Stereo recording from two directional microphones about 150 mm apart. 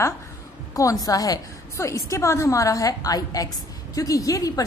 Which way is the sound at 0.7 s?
20° left (ahead or behind).